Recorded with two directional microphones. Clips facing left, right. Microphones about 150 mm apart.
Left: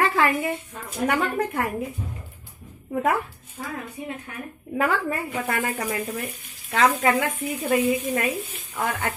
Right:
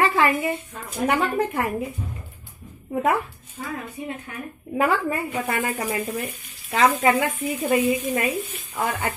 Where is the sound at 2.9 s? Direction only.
10° right (ahead or behind).